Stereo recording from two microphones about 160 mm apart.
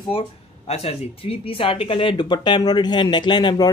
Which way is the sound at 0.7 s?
40° left (ahead or behind).